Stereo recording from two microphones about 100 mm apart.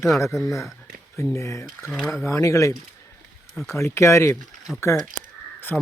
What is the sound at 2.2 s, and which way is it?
Speech, 30° left (ahead or behind).